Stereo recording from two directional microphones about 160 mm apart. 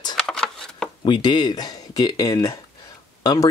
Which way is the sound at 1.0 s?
30° left (ahead or behind).